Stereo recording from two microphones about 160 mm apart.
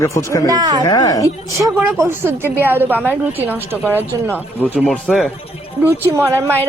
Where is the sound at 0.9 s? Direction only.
25° left (ahead or behind).